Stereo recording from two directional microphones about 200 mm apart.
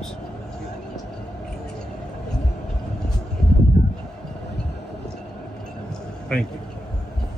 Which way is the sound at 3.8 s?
40° left (ahead or behind).